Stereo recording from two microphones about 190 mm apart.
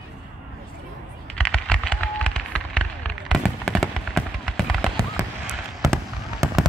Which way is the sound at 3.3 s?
Centre (ahead or behind).